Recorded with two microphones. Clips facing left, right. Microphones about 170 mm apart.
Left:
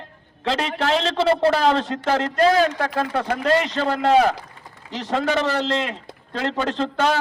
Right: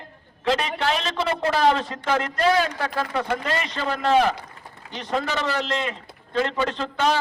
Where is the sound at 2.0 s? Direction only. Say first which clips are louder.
Left 3 dB; 45° left (ahead or behind).